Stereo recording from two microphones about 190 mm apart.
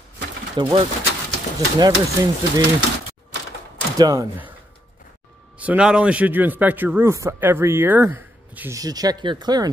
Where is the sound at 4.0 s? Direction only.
15° right (ahead or behind).